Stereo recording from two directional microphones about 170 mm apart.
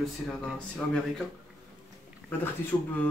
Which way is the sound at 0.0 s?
Centre (ahead or behind).